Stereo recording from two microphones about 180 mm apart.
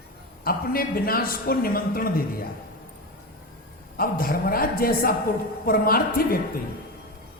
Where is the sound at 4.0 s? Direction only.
55° left (ahead or behind).